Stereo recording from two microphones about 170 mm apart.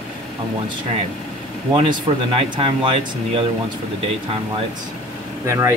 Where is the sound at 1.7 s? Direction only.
30° right (ahead or behind).